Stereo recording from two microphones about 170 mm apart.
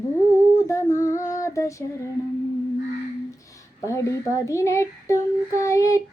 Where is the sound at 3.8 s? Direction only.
15° left (ahead or behind).